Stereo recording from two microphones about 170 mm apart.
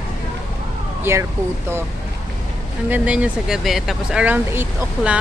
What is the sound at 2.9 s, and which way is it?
Speech, 5° right (ahead or behind).